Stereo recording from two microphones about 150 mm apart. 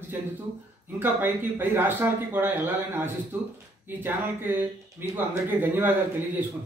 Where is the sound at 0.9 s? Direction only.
15° right (ahead or behind).